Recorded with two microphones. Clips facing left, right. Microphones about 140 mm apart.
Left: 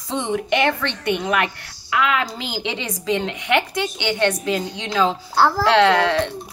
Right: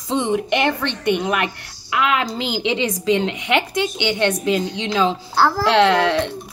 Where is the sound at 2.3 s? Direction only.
80° right.